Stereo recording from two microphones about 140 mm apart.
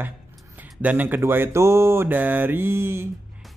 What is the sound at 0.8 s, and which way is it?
Speech, 15° right (ahead or behind).